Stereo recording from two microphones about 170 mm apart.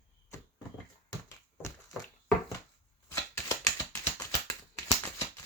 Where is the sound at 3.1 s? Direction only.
15° left (ahead or behind).